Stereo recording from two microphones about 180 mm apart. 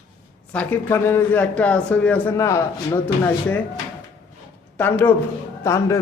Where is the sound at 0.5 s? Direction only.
10° left (ahead or behind).